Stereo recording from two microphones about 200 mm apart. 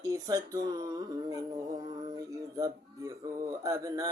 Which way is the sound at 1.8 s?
20° right (ahead or behind).